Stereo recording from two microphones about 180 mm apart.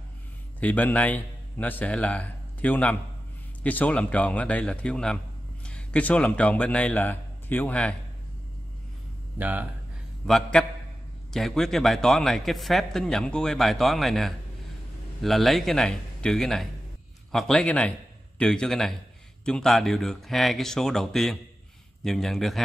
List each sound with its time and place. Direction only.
0.6 s a man's voice: 10° left (ahead or behind)
9.4 s speech: 10° right (ahead or behind)
10.2 s speech: centre (ahead or behind)